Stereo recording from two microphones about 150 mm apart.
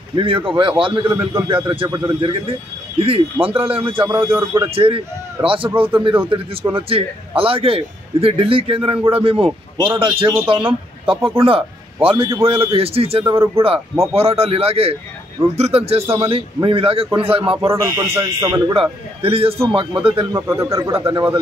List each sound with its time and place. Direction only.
0.1 s a man's voice: 35° right (ahead or behind)
4.1 s speech: 15° right (ahead or behind)
4.6 s a man's voice: 40° right (ahead or behind)
5.8 s speech: 10° right (ahead or behind)
6.2 s a man's voice: 35° right (ahead or behind)
17.6 s speech: 20° right (ahead or behind)
18.7 s a man's voice: 40° right (ahead or behind)
20.3 s speech: 20° right (ahead or behind)
21.0 s a man's voice: 35° right (ahead or behind)